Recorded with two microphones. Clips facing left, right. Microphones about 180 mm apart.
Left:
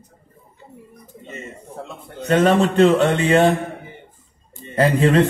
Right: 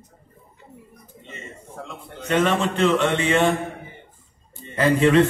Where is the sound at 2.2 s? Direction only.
35° left (ahead or behind).